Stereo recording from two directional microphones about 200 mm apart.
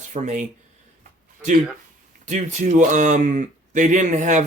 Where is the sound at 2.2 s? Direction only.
35° right (ahead or behind).